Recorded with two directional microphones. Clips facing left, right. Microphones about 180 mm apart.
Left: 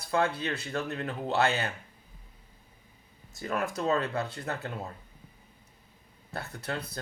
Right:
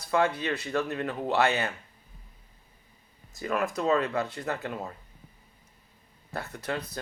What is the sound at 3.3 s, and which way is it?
Speech, 30° left (ahead or behind).